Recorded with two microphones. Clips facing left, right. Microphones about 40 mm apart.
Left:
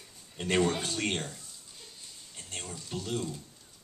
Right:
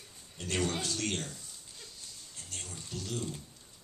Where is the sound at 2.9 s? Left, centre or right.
Left.